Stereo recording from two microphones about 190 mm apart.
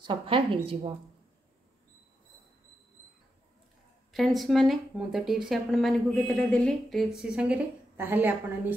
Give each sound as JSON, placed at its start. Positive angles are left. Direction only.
{"t": 0.0, "sound": "speech", "side_deg": -25}
{"t": 4.1, "sound": "speech", "side_deg": 0}